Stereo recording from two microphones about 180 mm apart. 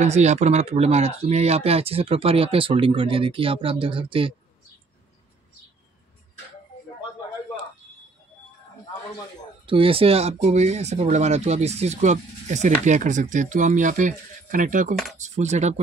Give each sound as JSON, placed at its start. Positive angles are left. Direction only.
{"t": 0.0, "sound": "speech", "side_deg": -40}
{"t": 9.7, "sound": "speech", "side_deg": -30}